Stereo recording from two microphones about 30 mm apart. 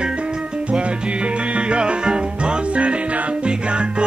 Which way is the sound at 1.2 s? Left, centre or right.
Right.